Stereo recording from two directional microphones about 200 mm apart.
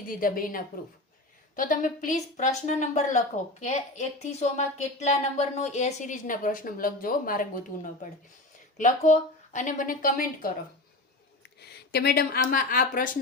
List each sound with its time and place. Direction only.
0.1 s a woman's voice: 45° left (ahead or behind)
8.8 s speech: 40° left (ahead or behind)
11.6 s speech: 55° left (ahead or behind)